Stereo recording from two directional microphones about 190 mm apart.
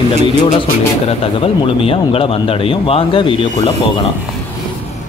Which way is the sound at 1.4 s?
30° left (ahead or behind).